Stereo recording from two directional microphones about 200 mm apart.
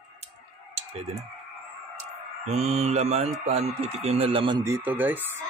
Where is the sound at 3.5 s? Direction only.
35° right (ahead or behind); by 5.4 s 10° right (ahead or behind).